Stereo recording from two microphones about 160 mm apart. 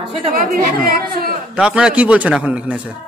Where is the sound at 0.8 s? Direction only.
65° right (ahead or behind).